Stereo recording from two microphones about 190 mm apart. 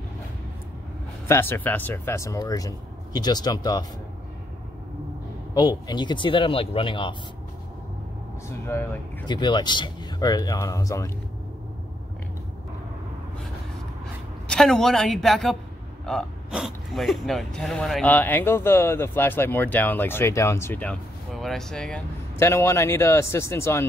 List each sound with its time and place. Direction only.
1.2 s speech: 15° left (ahead or behind)
5.5 s speech: 20° left (ahead or behind)
8.5 s speech: 15° left (ahead or behind)
9.2 s speech: 25° left (ahead or behind)
14.5 s speech: centre (ahead or behind)